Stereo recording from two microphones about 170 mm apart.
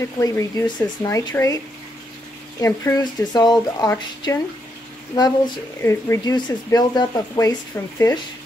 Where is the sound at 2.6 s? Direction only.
20° left (ahead or behind).